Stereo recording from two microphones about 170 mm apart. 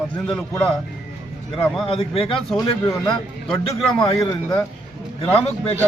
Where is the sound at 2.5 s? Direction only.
25° left (ahead or behind).